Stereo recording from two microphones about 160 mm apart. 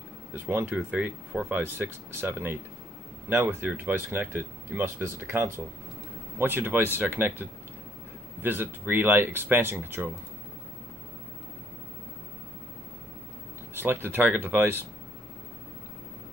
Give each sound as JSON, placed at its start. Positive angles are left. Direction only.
{"t": 0.3, "sound": "speech", "side_deg": -10}
{"t": 13.7, "sound": "speech", "side_deg": -15}